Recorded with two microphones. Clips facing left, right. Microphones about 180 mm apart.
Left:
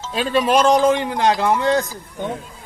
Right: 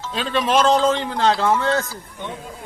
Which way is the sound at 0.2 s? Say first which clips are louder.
Left 2 dB; 10° left (ahead or behind).